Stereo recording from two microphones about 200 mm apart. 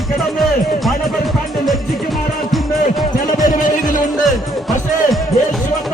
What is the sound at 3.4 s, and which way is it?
Music, 40° left (ahead or behind).